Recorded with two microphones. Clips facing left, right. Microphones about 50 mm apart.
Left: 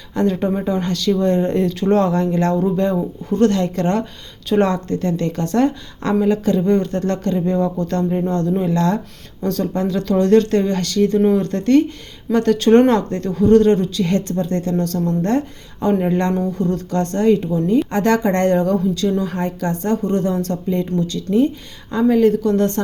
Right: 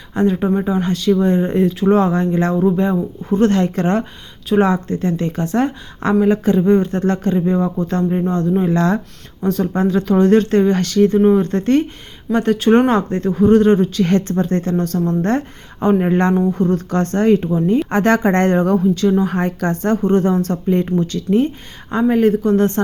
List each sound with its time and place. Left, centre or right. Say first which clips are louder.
0.1 s speech: right 2 dB; centre
0.4 s speech: right 2 dB; centre
3.2 s speech: right 1 dB; right
4.4 s speech: right 2 dB; centre
8.6 s speech: right 2 dB; right
13.8 s a woman's voice: right 3 dB; right